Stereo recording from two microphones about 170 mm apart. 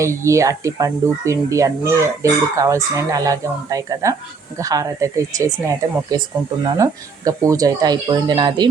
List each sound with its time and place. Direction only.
0.0 s speech: 15° right (ahead or behind)